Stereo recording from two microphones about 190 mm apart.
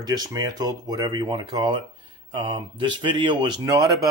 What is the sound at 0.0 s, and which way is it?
Speech, 20° right (ahead or behind).